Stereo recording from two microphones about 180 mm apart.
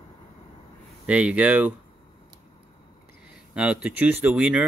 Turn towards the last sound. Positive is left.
turn(degrees=-10)  # may be behind; listen again after turning